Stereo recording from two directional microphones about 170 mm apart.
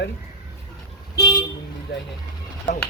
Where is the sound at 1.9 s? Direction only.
80° left.